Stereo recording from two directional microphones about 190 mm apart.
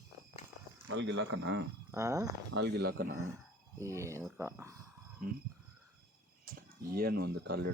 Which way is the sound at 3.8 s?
15° right (ahead or behind).